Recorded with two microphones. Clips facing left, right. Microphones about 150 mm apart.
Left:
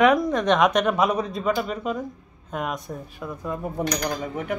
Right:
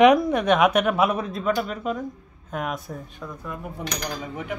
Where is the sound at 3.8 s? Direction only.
50° left (ahead or behind).